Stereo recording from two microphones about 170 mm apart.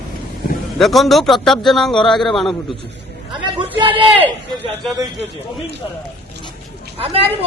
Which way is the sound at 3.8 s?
30° right (ahead or behind).